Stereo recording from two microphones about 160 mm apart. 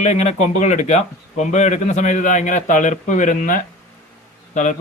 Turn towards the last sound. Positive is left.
turn(degrees=50)  # may be behind; listen again after turning